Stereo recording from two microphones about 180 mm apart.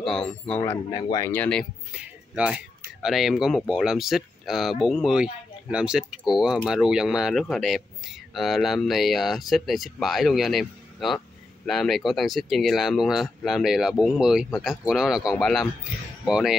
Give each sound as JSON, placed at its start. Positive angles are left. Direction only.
{"t": 0.0, "sound": "speech", "side_deg": 5}
{"t": 0.9, "sound": "speech", "side_deg": 20}
{"t": 1.3, "sound": "speech", "side_deg": 5}
{"t": 2.0, "sound": "speech", "side_deg": -5}